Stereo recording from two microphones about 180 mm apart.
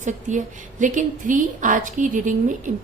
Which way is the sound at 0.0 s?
45° right (ahead or behind).